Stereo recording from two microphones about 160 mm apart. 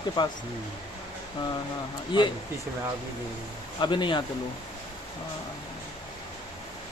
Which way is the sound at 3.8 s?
30° left (ahead or behind).